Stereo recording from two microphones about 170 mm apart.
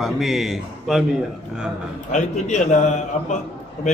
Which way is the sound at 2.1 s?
45° left (ahead or behind).